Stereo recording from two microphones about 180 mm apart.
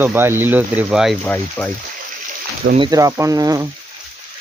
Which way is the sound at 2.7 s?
25° right (ahead or behind).